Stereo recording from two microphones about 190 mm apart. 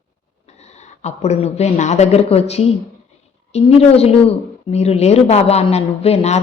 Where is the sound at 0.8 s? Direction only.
35° left (ahead or behind).